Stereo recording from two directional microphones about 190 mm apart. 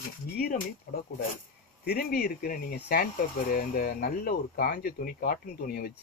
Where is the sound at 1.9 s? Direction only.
55° left (ahead or behind).